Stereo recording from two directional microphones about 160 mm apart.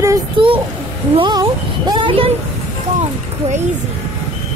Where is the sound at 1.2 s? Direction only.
25° right (ahead or behind).